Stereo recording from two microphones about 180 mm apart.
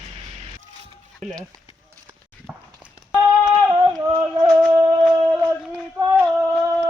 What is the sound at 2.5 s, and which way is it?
Walk, 5° right (ahead or behind).